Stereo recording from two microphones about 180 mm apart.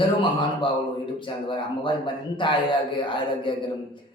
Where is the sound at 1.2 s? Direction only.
25° left (ahead or behind).